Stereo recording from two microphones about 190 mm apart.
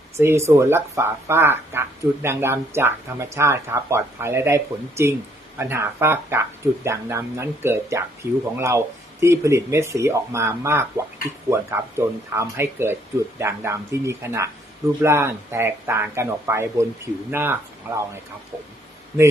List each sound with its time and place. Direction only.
0.2 s speech: 15° right (ahead or behind)